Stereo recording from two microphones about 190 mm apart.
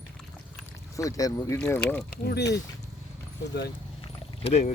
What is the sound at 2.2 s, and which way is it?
Speech, 60° left (ahead or behind).